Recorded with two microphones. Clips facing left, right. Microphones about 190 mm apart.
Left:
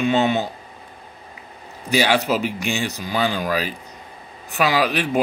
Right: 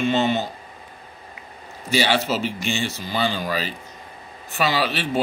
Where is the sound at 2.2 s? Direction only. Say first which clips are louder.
Left 2 dB; 10° left (ahead or behind).